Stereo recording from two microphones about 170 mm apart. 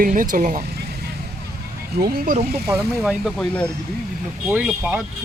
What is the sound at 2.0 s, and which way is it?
Speech, 65° right (ahead or behind).